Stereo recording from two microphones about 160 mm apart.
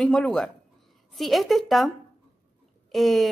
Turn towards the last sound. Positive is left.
turn(degrees=0)  # may be behind; listen again after turning